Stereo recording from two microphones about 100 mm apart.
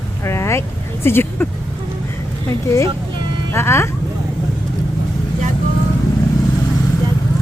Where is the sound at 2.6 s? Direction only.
30° left (ahead or behind).